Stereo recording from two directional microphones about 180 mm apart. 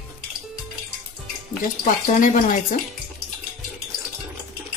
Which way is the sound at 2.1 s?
45° left (ahead or behind).